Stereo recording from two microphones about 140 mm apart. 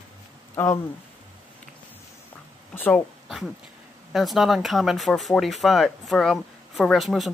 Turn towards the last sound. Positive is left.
turn(degrees=0)  # may be behind; listen again after turning